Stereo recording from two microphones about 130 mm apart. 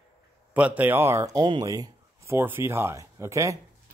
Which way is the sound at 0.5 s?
10° right (ahead or behind).